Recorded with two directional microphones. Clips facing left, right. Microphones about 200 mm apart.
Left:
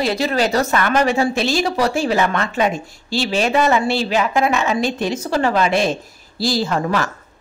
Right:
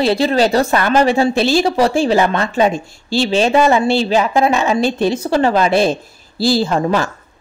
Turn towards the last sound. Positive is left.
turn(degrees=-30)  # may be behind; listen again after turning